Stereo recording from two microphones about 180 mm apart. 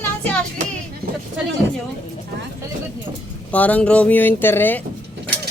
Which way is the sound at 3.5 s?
10° left (ahead or behind).